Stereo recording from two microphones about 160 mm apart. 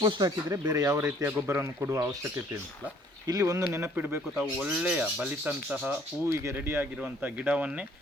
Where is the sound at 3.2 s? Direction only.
20° right (ahead or behind).